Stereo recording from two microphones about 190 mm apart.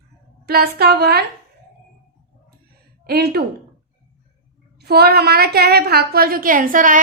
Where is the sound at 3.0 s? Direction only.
55° right (ahead or behind).